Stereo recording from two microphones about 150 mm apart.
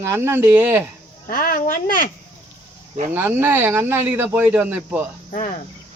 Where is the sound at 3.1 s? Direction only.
15° right (ahead or behind).